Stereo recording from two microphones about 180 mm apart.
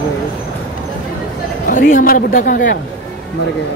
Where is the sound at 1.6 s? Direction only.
50° left (ahead or behind).